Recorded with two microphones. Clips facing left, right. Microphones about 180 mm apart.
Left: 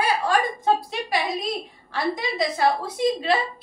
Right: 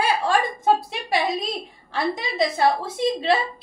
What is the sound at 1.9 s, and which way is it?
A woman's voice, 25° right (ahead or behind).